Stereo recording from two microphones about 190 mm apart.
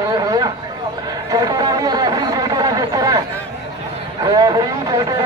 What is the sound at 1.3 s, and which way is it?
Chatter, 20° right (ahead or behind).